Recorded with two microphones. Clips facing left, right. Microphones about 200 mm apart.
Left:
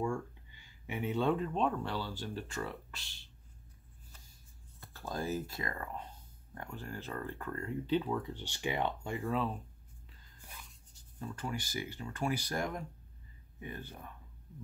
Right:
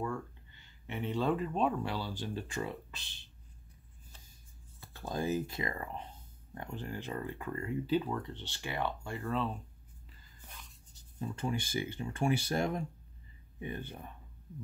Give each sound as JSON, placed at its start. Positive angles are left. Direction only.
{"t": 0.0, "sound": "speech", "side_deg": 10}
{"t": 4.9, "sound": "speech", "side_deg": -20}
{"t": 9.3, "sound": "speech", "side_deg": 5}
{"t": 10.4, "sound": "a sound", "side_deg": 10}
{"t": 11.1, "sound": "speech", "side_deg": -20}